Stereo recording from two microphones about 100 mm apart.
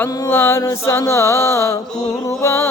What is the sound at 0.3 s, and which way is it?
Mantra, 25° left (ahead or behind).